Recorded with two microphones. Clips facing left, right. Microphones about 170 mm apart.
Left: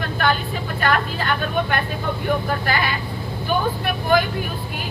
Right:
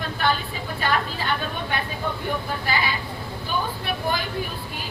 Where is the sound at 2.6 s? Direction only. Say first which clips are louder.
Left 3 dB; 55° left (ahead or behind).